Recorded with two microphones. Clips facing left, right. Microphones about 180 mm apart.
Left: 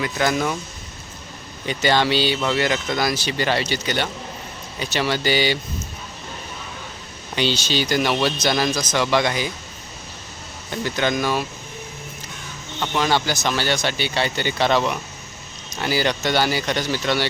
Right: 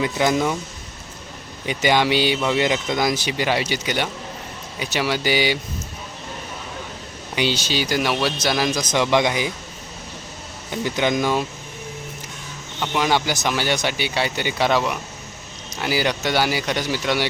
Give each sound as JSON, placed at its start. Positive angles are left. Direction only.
{"t": 0.0, "sound": "speech", "side_deg": -20}
{"t": 1.6, "sound": "speech", "side_deg": -15}
{"t": 7.3, "sound": "speech", "side_deg": -10}
{"t": 10.7, "sound": "speech", "side_deg": -15}
{"t": 12.8, "sound": "speech", "side_deg": -10}